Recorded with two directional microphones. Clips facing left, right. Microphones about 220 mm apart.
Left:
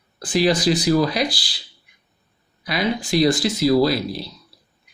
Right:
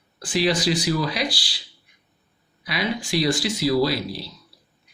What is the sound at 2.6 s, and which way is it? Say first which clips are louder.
Speech: left 4 dB; 45° left (ahead or behind).